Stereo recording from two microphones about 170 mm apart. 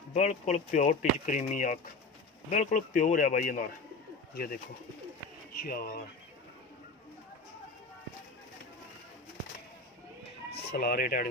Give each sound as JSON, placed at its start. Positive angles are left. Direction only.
{"t": 0.1, "sound": "speech", "side_deg": 40}
{"t": 5.6, "sound": "speech", "side_deg": 65}
{"t": 10.7, "sound": "speech", "side_deg": 60}